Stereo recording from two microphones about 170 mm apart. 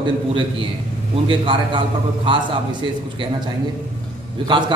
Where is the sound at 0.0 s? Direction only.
30° right (ahead or behind).